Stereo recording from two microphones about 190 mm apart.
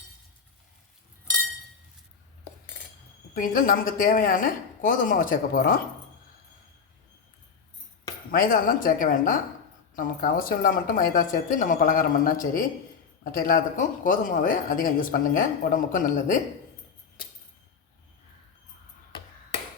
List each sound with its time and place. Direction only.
3.3 s speech: 45° left (ahead or behind)
8.3 s speech: 50° left (ahead or behind)